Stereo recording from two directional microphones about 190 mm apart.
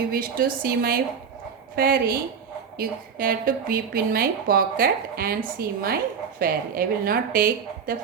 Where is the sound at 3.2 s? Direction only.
50° right (ahead or behind).